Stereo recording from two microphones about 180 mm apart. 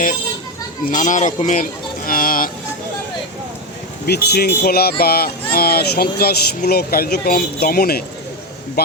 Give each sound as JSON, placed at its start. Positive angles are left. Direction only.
{"t": 0.9, "sound": "speech", "side_deg": 45}
{"t": 4.0, "sound": "speech", "side_deg": 65}